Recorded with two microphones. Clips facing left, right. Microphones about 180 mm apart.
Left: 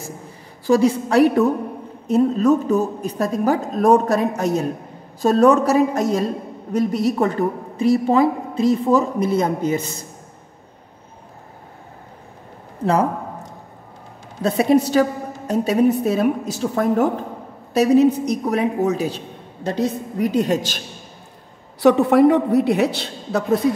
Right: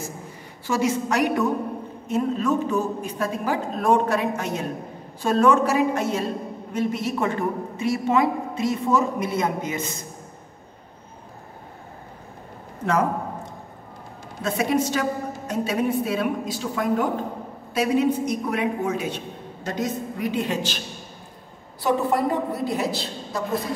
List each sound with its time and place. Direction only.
0.7 s a woman's voice: 35° left (ahead or behind)
12.8 s a sound: 35° left (ahead or behind)
14.4 s a woman's voice: 35° left (ahead or behind)
21.8 s a woman's voice: 75° left (ahead or behind)